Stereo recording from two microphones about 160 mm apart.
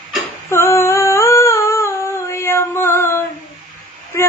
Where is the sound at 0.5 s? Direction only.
15° left (ahead or behind).